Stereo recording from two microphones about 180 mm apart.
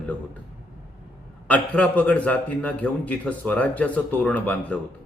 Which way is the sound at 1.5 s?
10° left (ahead or behind).